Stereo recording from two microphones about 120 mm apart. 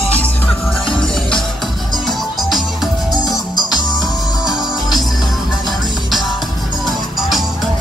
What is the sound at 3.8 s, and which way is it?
Music, 35° left (ahead or behind).